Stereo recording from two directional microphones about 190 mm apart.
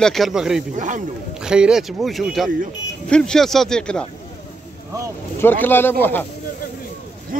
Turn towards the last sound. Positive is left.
turn(degrees=10)  # may be behind; listen again after turning